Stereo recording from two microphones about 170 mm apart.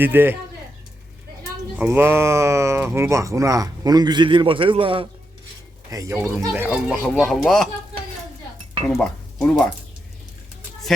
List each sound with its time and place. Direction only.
0.0 s speech: 10° right (ahead or behind)
1.8 s speech: 15° right (ahead or behind); by 5.0 s 30° right (ahead or behind)
5.9 s speech: 20° right (ahead or behind)
6.5 s speech: 5° right (ahead or behind)
8.9 s speech: 5° left (ahead or behind)